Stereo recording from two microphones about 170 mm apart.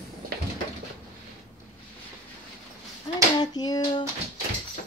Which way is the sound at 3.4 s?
25° left (ahead or behind).